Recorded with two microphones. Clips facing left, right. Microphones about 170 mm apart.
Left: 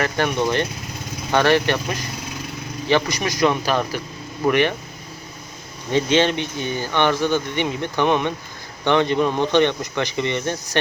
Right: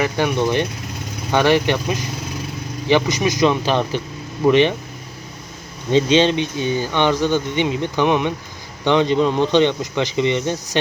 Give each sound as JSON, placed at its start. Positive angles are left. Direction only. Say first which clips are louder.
{"t": 0.0, "sound": "speech", "louder": "right 2 dB", "side_deg": -15}
{"t": 5.9, "sound": "speech", "louder": "right 3 dB", "side_deg": -20}